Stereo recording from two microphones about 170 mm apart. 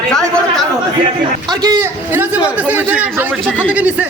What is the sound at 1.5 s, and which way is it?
Speech, 25° right (ahead or behind).